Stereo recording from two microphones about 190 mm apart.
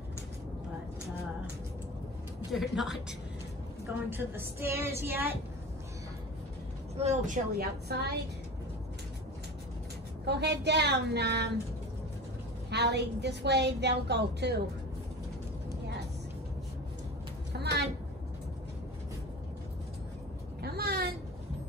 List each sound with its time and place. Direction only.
2.5 s a woman's voice: centre (ahead or behind)
7.0 s speech: 35° right (ahead or behind)
7.5 s a woman's voice: 60° right (ahead or behind)
10.2 s a woman's voice: 60° right (ahead or behind)
12.6 s a woman's voice: 60° right (ahead or behind)
17.5 s a sound: 60° right (ahead or behind)
20.6 s a sound: 55° right (ahead or behind)